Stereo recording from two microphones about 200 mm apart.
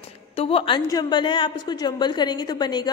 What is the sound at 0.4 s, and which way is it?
A woman's voice, 25° left (ahead or behind).